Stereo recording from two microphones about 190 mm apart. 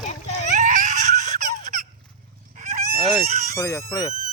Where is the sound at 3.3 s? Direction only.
40° right (ahead or behind).